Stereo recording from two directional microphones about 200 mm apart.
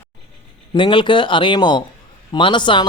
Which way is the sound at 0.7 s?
25° left (ahead or behind).